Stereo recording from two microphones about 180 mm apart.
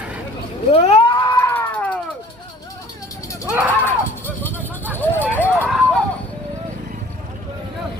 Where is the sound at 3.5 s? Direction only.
10° right (ahead or behind).